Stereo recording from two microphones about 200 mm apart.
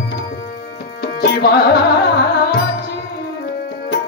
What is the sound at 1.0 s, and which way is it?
Music, 55° left (ahead or behind).